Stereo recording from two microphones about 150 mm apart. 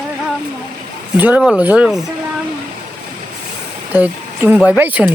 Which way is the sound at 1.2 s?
5° right (ahead or behind).